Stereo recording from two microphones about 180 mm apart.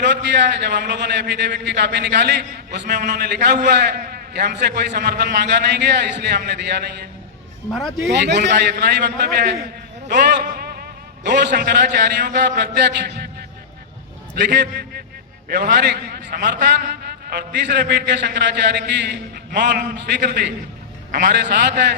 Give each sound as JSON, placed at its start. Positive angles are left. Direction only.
{"t": 0.0, "sound": "a man's voice", "side_deg": -75}
{"t": 7.7, "sound": "a man's voice", "side_deg": 0}
{"t": 8.1, "sound": "a man's voice", "side_deg": -70}
{"t": 10.4, "sound": "a sound", "side_deg": -60}
{"t": 11.2, "sound": "a man's voice", "side_deg": -75}
{"t": 14.4, "sound": "a man's voice", "side_deg": -70}
{"t": 15.4, "sound": "a man's voice", "side_deg": -60}
{"t": 21.1, "sound": "a man's voice", "side_deg": -45}
{"t": 21.6, "sound": "a man's voice", "side_deg": -70}